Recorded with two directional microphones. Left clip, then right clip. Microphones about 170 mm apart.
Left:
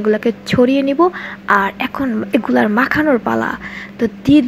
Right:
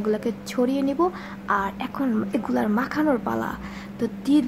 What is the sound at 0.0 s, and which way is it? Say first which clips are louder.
A woman's voice: left 10 dB; 15° left (ahead or behind).